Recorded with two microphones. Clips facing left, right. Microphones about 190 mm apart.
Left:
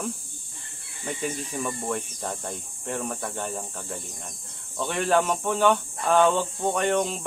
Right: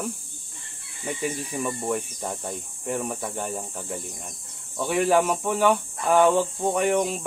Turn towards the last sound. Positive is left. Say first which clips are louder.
# right 2 dB
turn(degrees=-10)  # may be behind; listen again after turning